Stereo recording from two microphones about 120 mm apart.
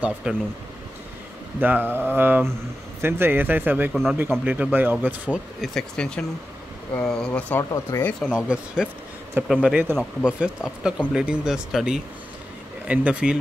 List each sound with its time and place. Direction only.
0.0 s speech: 10° right (ahead or behind)
1.6 s speech: 15° right (ahead or behind)
3.9 s speech: centre (ahead or behind)
4.2 s speech: 15° right (ahead or behind)
5.8 s speech: 10° left (ahead or behind)
7.9 s speech: 25° left (ahead or behind)
8.4 s speech: 5° right (ahead or behind)